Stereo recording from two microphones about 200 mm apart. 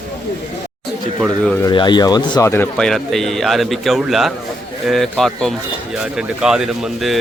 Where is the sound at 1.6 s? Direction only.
20° left (ahead or behind); by 7.2 s centre (ahead or behind).